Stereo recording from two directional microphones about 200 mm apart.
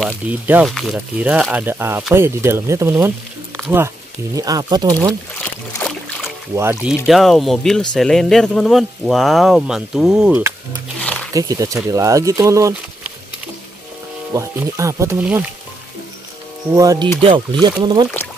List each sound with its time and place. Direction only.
0.0 s speech: 5° right (ahead or behind)
5.4 s boat: 10° left (ahead or behind)
6.5 s speech: 10° right (ahead or behind)
11.0 s wild animals: 5° left (ahead or behind)
11.3 s speech: 15° right (ahead or behind)
14.3 s speech: 15° right (ahead or behind)
16.7 s speech: 15° right (ahead or behind)